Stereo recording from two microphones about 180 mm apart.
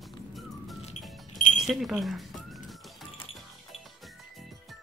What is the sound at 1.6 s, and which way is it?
Music, centre (ahead or behind).